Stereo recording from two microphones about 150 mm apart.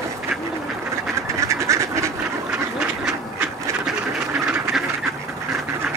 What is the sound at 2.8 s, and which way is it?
Duck, 10° right (ahead or behind).